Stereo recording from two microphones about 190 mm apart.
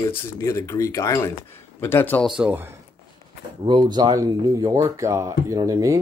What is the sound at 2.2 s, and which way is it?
Speech, 5° right (ahead or behind).